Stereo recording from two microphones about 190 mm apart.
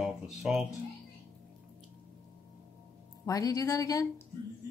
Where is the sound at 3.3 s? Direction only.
20° left (ahead or behind).